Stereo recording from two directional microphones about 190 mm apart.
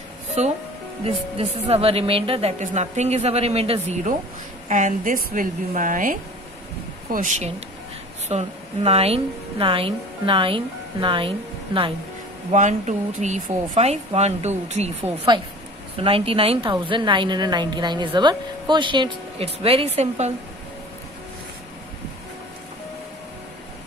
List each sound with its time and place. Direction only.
0.4 s a woman's voice: 35° right (ahead or behind)
4.6 s a woman's voice: 40° right (ahead or behind)
12.4 s a woman's voice: 40° right (ahead or behind)
16.0 s a woman's voice: 30° right (ahead or behind)